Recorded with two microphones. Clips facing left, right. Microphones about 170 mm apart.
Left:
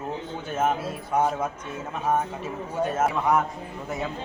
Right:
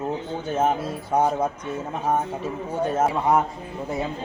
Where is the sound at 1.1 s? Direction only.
40° right (ahead or behind).